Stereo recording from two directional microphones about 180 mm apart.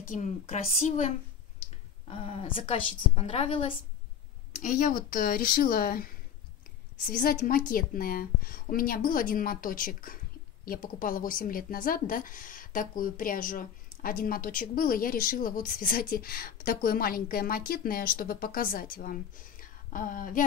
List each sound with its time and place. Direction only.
0.0 s a woman's voice: 45° left (ahead or behind)
4.6 s speech: 50° left (ahead or behind)
7.1 s speech: 50° left (ahead or behind)